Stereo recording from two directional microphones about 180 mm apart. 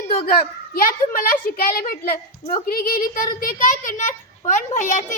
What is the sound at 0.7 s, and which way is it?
A child's voice, 50° left (ahead or behind).